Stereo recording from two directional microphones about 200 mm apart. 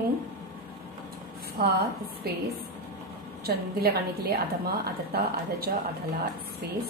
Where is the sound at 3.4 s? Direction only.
50° right (ahead or behind).